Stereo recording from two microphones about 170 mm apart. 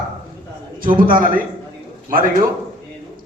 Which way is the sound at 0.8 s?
55° right (ahead or behind).